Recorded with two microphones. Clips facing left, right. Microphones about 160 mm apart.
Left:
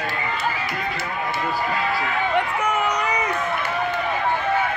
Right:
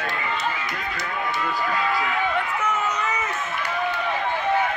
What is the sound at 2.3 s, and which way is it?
Run, 60° left (ahead or behind).